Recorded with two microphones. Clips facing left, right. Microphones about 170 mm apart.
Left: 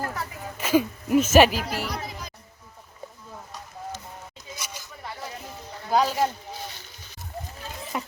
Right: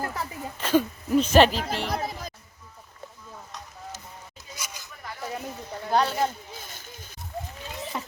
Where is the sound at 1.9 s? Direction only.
50° right (ahead or behind).